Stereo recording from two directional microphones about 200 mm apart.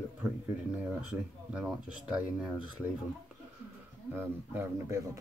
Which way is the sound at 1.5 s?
5° right (ahead or behind).